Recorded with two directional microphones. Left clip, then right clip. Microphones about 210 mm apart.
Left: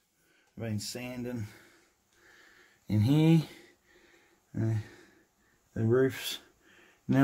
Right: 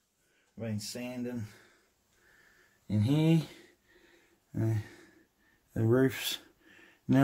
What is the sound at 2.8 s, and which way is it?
Speech, 30° left (ahead or behind).